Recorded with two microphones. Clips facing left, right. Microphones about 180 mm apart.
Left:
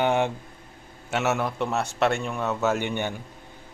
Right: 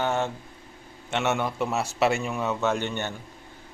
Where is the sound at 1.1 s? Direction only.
5° left (ahead or behind).